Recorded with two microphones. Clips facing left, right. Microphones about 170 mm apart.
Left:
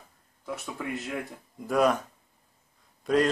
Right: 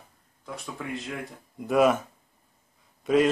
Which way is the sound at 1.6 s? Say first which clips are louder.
Right 3 dB; 5° right (ahead or behind).